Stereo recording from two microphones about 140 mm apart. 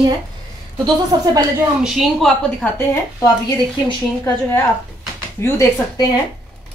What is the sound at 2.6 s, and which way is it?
Speech, 10° left (ahead or behind).